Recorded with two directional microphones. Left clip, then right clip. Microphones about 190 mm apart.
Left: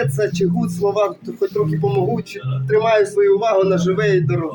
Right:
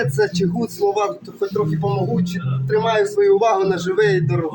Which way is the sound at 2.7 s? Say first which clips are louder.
Left 2 dB; 5° left (ahead or behind).